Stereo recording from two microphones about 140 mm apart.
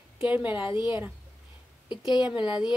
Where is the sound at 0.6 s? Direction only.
35° left (ahead or behind).